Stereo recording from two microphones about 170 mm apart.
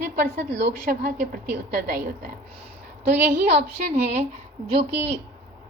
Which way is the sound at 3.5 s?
60° right (ahead or behind).